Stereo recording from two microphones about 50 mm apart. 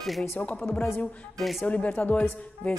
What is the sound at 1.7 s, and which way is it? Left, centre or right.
Speech, left.